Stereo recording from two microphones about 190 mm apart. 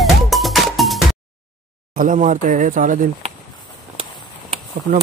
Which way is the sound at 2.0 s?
40° right (ahead or behind).